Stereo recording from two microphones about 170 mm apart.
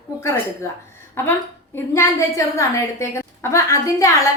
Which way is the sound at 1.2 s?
15° left (ahead or behind).